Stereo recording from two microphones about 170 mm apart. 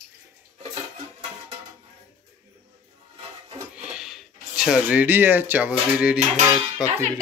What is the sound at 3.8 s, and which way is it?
Speech, 5° right (ahead or behind).